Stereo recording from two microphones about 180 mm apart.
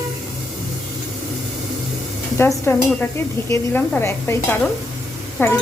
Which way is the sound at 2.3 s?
15° left (ahead or behind).